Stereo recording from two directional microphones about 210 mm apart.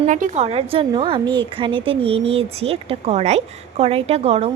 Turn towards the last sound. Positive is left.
turn(degrees=-30)  # may be behind; listen again after turning